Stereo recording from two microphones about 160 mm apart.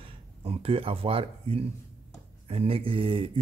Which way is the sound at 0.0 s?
40° right (ahead or behind).